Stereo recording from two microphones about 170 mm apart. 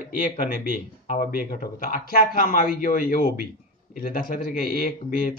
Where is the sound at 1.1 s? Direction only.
55° left (ahead or behind).